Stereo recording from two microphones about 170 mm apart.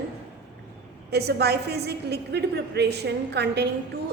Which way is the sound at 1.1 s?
70° right (ahead or behind).